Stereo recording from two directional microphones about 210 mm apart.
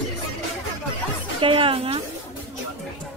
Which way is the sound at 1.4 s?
25° right (ahead or behind).